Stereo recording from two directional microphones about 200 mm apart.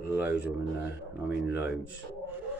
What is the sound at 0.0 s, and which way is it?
Speech, 10° right (ahead or behind).